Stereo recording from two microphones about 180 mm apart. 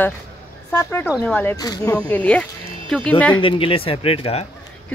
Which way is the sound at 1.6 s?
20° left (ahead or behind).